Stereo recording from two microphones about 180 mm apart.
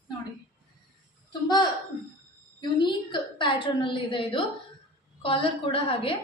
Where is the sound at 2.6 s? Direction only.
25° left (ahead or behind).